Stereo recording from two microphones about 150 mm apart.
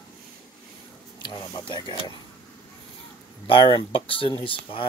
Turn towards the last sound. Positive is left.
turn(degrees=35)  # may be behind; listen again after turning